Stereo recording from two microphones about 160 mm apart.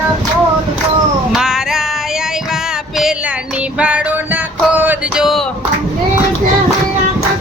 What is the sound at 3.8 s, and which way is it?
Music, 5° right (ahead or behind).